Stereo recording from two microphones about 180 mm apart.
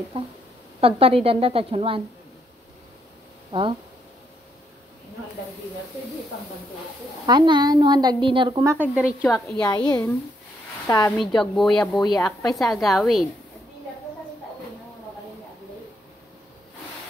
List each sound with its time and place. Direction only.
0.1 s a woman's voice: 30° right (ahead or behind)
7.2 s speech: 25° right (ahead or behind)
8.7 s a woman's voice: 10° right (ahead or behind)
9.6 s a woman's voice: 20° left (ahead or behind)
11.1 s speech: centre (ahead or behind)